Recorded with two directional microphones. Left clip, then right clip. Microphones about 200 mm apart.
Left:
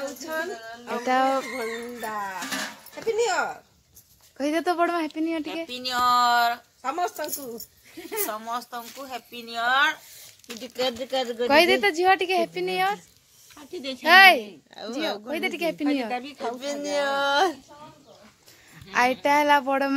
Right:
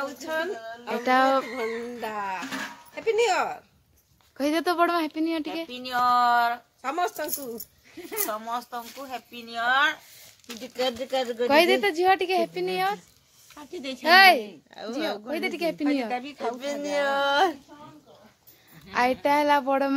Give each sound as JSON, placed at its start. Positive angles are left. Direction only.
{"t": 0.2, "sound": "speech", "side_deg": -35}
{"t": 1.0, "sound": "speech", "side_deg": -10}
{"t": 1.6, "sound": "music", "side_deg": -45}
{"t": 3.2, "sound": "speech", "side_deg": -40}
{"t": 4.4, "sound": "speech", "side_deg": 0}
{"t": 6.8, "sound": "speech", "side_deg": -40}
{"t": 8.0, "sound": "speech", "side_deg": 20}
{"t": 8.3, "sound": "speech", "side_deg": -15}
{"t": 10.6, "sound": "speech", "side_deg": 15}
{"t": 13.6, "sound": "speech", "side_deg": -30}
{"t": 14.0, "sound": "speech", "side_deg": 5}
{"t": 16.1, "sound": "a woman's voice", "side_deg": -30}
{"t": 16.5, "sound": "speech", "side_deg": -5}
{"t": 18.9, "sound": "speech", "side_deg": 0}